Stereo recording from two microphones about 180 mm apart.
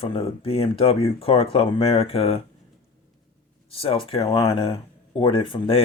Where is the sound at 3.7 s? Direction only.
30° left (ahead or behind).